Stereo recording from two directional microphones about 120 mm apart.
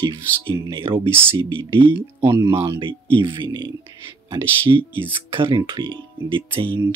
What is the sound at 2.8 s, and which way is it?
Speech, 45° right (ahead or behind).